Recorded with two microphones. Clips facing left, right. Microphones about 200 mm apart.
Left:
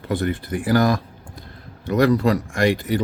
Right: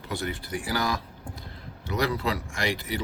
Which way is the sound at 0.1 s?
55° left (ahead or behind).